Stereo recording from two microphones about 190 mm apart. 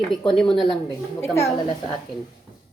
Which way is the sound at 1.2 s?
15° left (ahead or behind).